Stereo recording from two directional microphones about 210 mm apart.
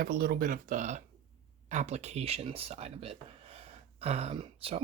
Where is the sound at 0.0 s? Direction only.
45° right (ahead or behind).